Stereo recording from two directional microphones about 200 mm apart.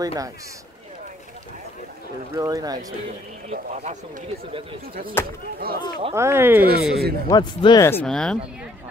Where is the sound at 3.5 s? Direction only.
35° right (ahead or behind).